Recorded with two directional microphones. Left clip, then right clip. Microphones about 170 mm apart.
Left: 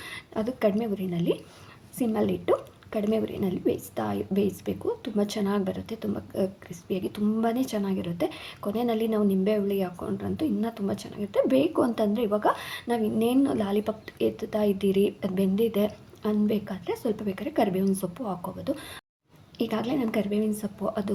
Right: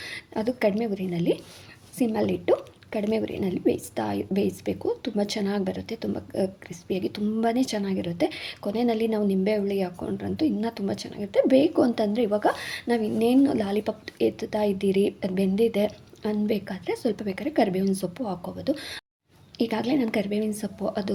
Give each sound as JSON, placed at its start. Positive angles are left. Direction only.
{"t": 0.0, "sound": "a woman's voice", "side_deg": -25}